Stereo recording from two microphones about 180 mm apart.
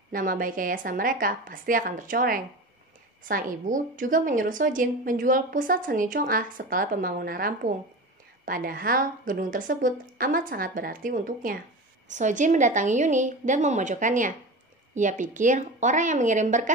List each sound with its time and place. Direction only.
0.1 s a woman's voice: 50° right (ahead or behind)